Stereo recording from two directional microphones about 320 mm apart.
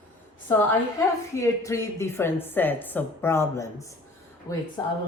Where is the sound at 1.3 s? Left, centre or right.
Centre.